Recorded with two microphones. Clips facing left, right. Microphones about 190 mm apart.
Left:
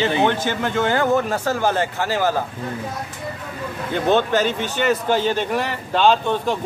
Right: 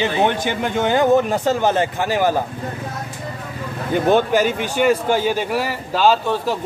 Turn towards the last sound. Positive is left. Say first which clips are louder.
# right 1 dB
turn(degrees=-5)  # may be behind; listen again after turning